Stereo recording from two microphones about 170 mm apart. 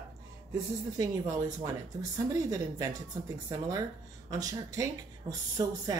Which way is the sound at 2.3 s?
20° right (ahead or behind).